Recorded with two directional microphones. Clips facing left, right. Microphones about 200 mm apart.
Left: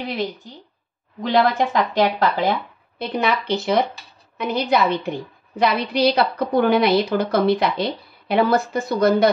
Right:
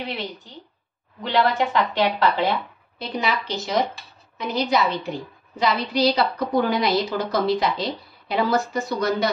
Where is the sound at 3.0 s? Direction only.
60° left (ahead or behind).